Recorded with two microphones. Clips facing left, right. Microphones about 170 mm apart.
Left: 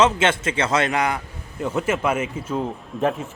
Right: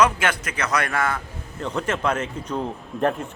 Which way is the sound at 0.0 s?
25° left (ahead or behind).